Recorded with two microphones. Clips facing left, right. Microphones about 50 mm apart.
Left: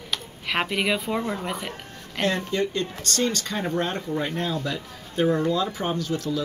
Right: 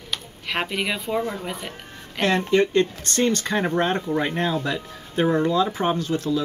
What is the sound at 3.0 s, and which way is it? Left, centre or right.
Speech, right.